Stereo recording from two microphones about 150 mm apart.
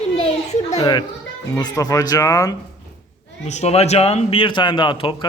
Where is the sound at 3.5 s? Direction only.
45° left (ahead or behind).